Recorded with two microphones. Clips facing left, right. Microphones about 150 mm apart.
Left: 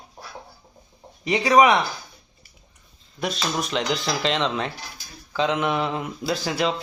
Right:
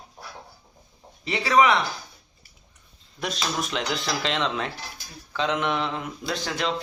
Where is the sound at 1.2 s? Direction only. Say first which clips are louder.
Left 3 dB; 15° left (ahead or behind).